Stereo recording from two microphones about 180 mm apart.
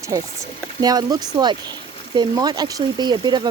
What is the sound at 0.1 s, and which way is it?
Speech, 20° right (ahead or behind).